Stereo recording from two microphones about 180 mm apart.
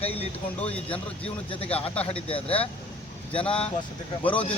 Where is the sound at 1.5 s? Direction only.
30° left (ahead or behind).